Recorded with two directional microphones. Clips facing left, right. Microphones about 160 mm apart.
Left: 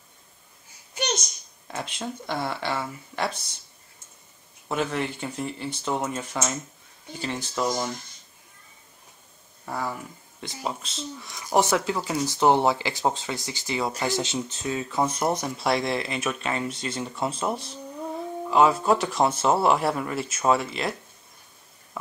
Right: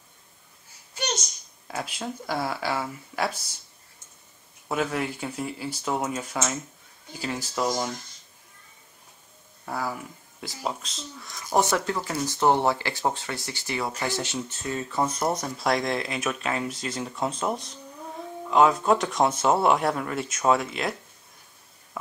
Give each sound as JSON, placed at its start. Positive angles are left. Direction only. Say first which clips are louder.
{"t": 1.7, "sound": "speech", "louder": "even", "side_deg": -5}
{"t": 4.6, "sound": "speech", "louder": "even", "side_deg": -5}
{"t": 9.7, "sound": "speech", "louder": "even", "side_deg": 0}